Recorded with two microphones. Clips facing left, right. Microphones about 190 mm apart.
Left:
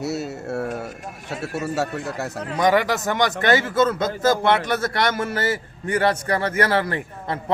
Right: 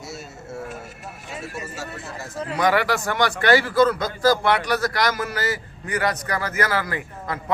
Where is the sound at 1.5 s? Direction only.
65° left (ahead or behind).